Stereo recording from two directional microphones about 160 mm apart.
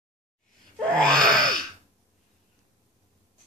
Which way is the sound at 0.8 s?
5° left (ahead or behind).